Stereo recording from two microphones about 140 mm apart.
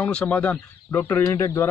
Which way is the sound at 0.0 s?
10° left (ahead or behind).